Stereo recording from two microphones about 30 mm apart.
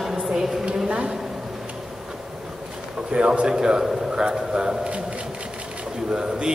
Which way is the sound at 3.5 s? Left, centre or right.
Right.